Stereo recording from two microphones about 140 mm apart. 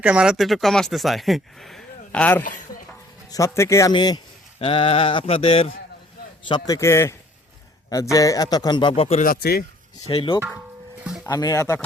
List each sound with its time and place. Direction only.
0.0 s speech: 5° right (ahead or behind); by 2.4 s 10° left (ahead or behind)
3.3 s a man's voice: 20° left (ahead or behind)
4.6 s a sound: 40° left (ahead or behind)
6.5 s a man's voice: 25° left (ahead or behind); by 9.2 s 45° left (ahead or behind)
9.2 s speech: 90° left
10.1 s speech: 40° left (ahead or behind)
11.3 s a man's voice: 25° left (ahead or behind)